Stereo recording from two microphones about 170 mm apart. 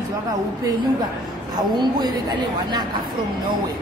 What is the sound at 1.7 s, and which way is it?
Speech, 25° right (ahead or behind).